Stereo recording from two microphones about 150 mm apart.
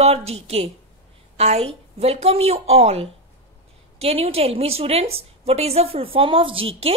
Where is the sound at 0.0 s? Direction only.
45° right (ahead or behind).